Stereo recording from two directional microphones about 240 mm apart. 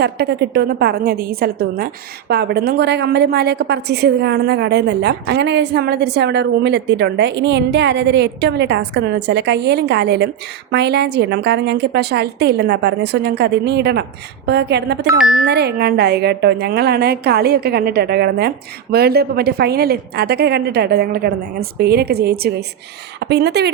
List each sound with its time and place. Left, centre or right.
0.0 s a woman's voice: right